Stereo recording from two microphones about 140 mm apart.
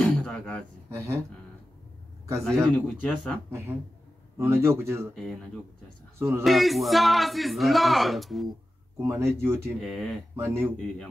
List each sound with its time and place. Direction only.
0.0 s a sound: 5° left (ahead or behind)
0.8 s speech: 20° right (ahead or behind)
2.4 s speech: 5° left (ahead or behind)
4.4 s a man's voice: 20° right (ahead or behind)
5.1 s speech: centre (ahead or behind)
6.1 s speech: 20° right (ahead or behind)
6.4 s speech: centre (ahead or behind)
9.0 s speech: 20° right (ahead or behind)
9.8 s speech: centre (ahead or behind)
10.3 s a man's voice: 15° right (ahead or behind)